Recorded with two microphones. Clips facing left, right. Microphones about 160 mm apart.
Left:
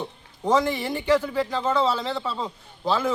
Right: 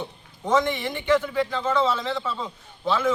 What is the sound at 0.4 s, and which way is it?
Speech, 35° left (ahead or behind).